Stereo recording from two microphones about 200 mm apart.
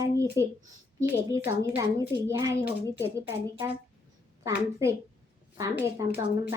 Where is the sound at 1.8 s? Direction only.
20° right (ahead or behind).